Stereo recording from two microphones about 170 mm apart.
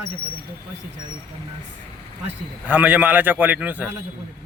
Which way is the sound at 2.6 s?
10° right (ahead or behind).